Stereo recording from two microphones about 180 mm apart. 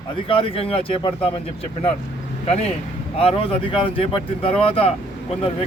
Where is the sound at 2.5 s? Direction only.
35° left (ahead or behind).